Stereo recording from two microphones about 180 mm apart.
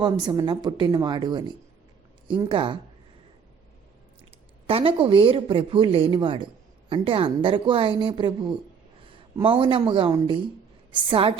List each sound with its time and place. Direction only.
0.0 s speech: 25° right (ahead or behind)
4.6 s speech: 30° right (ahead or behind)